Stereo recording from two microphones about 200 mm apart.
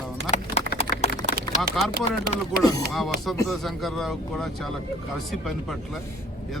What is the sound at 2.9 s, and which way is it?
Speech, centre (ahead or behind).